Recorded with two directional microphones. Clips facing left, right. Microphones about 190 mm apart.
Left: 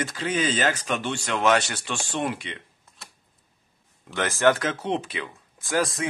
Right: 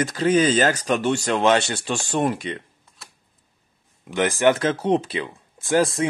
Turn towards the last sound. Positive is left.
turn(degrees=-30)  # may be behind; listen again after turning